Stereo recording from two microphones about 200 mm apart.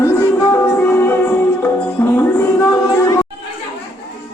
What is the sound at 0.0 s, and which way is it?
Music, 10° left (ahead or behind).